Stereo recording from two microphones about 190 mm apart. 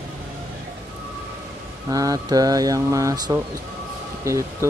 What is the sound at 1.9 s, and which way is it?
Speech, 20° right (ahead or behind).